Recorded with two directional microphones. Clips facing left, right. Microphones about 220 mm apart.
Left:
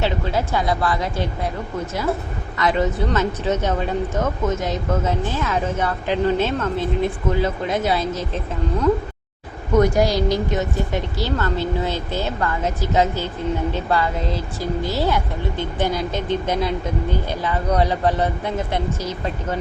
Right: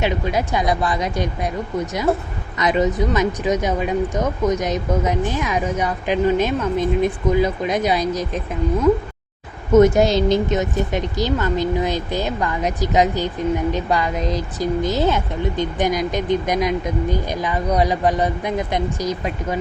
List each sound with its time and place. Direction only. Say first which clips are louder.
0.0 s speech: right 1 dB; 15° right (ahead or behind)
2.6 s speech: right 2 dB; 15° right (ahead or behind)
9.7 s speech: right 4 dB; 20° right (ahead or behind)